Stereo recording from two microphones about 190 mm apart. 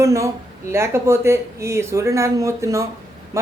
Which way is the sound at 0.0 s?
15° right (ahead or behind).